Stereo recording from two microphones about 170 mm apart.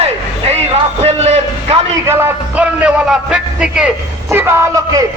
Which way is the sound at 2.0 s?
15° right (ahead or behind).